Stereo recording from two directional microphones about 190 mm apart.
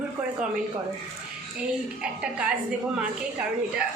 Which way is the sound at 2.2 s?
5° right (ahead or behind).